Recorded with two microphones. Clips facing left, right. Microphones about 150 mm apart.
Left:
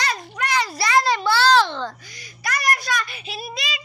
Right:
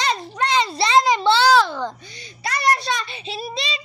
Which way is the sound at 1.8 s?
25° right (ahead or behind).